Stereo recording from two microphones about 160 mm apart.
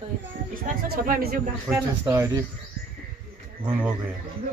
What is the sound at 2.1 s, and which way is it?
Cricket, 20° right (ahead or behind).